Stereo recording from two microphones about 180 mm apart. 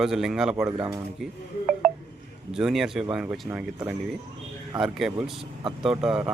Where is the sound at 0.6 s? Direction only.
20° right (ahead or behind).